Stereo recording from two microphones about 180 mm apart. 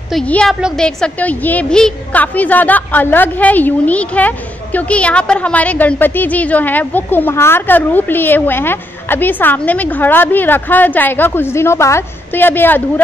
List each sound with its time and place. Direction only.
0.1 s a woman's voice: 5° left (ahead or behind)